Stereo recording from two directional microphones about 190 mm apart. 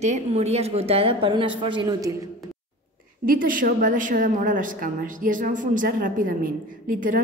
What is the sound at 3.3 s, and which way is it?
A woman's voice, 45° right (ahead or behind).